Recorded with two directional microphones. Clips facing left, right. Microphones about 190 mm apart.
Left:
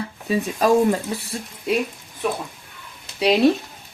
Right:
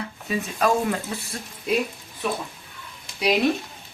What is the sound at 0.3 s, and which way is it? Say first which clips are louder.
Speech: left 5 dB; 30° left (ahead or behind).